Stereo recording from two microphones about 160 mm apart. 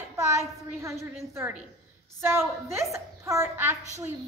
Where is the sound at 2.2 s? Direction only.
15° right (ahead or behind).